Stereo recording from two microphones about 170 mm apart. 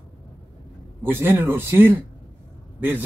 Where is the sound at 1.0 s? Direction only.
15° right (ahead or behind).